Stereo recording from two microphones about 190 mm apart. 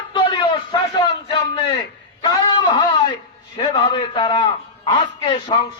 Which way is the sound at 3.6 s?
25° left (ahead or behind).